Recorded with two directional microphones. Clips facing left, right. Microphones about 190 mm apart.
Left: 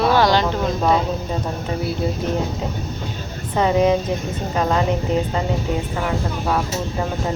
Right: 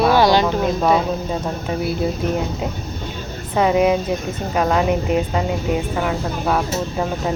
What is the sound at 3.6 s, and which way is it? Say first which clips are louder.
Speech: right 1 dB; 10° right (ahead or behind).